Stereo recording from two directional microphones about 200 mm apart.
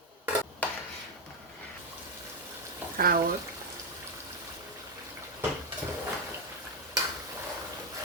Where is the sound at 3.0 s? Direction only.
45° right (ahead or behind).